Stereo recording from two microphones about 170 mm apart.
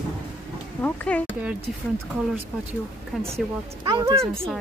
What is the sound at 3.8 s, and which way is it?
Speech, 20° right (ahead or behind).